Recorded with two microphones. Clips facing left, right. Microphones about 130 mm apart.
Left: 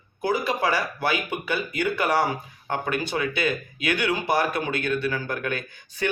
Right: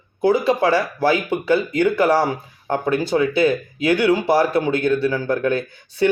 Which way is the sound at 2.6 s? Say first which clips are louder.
Right 7 dB; 35° right (ahead or behind).